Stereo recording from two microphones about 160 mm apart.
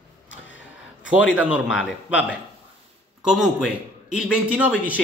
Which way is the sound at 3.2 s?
5° right (ahead or behind).